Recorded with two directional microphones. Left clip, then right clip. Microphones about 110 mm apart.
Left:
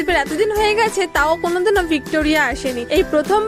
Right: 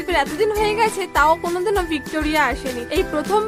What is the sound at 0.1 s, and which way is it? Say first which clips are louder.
A woman's voice: left 1 dB; 45° left (ahead or behind).